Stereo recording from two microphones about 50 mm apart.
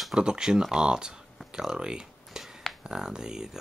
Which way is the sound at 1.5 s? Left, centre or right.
Centre.